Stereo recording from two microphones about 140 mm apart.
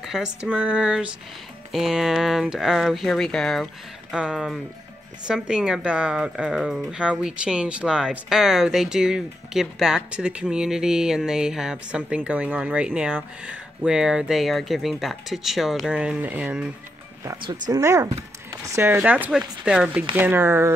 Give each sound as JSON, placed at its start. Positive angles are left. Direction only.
{"t": 0.0, "sound": "speech", "side_deg": -5}
{"t": 17.2, "sound": "speech", "side_deg": -25}